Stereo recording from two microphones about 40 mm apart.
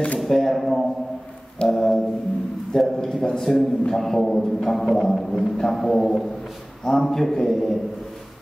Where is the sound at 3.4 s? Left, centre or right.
Centre.